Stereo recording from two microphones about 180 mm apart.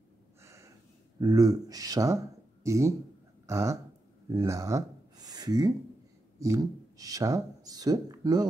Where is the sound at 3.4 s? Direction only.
15° right (ahead or behind).